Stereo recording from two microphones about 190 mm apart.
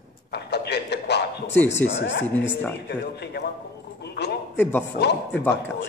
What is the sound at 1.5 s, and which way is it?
Speech, 10° left (ahead or behind).